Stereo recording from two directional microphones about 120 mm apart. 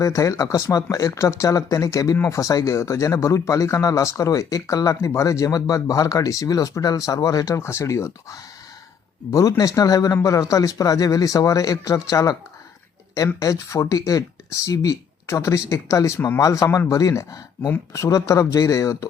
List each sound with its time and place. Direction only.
0.0 s speech: 25° left (ahead or behind)